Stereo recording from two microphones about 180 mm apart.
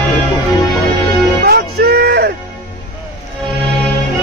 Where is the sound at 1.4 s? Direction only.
60° right (ahead or behind).